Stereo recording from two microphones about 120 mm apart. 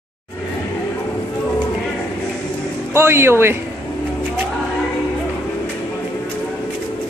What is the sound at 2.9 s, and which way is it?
Speech, 20° right (ahead or behind).